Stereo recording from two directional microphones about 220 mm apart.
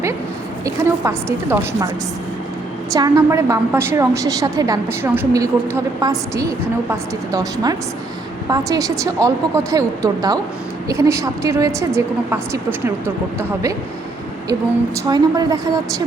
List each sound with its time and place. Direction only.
0.6 s a woman's voice: 15° right (ahead or behind)
2.9 s a woman's voice: 15° right (ahead or behind)
15.1 s a woman's voice: 15° right (ahead or behind)